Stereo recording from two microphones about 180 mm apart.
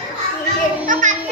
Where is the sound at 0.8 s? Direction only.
45° right (ahead or behind).